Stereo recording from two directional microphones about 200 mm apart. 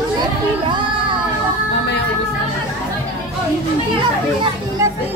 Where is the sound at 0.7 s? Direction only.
25° right (ahead or behind).